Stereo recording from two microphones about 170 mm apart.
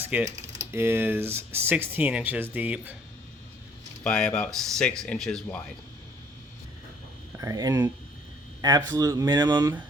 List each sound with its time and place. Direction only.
0.1 s speech: 5° right (ahead or behind)
4.0 s speech: 5° left (ahead or behind)
7.3 s speech: 20° right (ahead or behind)
8.9 s speech: 20° right (ahead or behind)